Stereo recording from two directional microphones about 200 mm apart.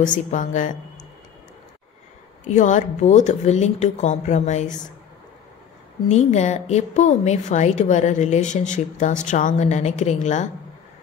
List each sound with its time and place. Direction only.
0.0 s a woman's voice: 40° left (ahead or behind)
2.4 s a woman's voice: 35° left (ahead or behind)
6.0 s a woman's voice: 35° left (ahead or behind)